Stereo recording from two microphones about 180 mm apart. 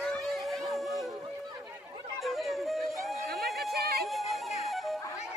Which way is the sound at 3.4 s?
Centre (ahead or behind).